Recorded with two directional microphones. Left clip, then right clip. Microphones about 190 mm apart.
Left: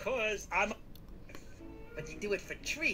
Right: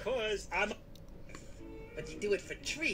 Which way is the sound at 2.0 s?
50° left (ahead or behind).